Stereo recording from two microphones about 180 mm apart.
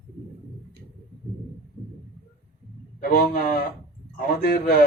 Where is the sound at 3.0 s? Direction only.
55° left (ahead or behind).